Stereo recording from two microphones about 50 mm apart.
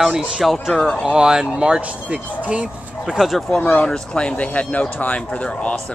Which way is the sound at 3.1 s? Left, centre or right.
Centre.